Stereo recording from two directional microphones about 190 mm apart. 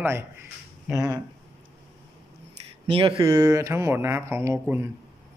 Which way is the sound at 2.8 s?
30° right (ahead or behind).